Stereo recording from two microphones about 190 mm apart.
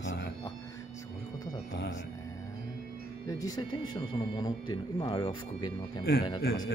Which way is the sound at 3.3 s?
20° left (ahead or behind).